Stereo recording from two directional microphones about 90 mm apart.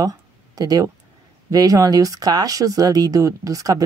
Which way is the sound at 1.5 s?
40° right (ahead or behind).